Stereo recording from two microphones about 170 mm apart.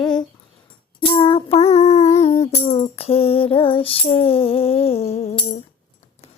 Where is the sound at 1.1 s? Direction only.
30° left (ahead or behind).